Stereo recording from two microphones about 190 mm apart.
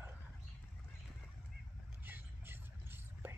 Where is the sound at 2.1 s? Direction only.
10° right (ahead or behind).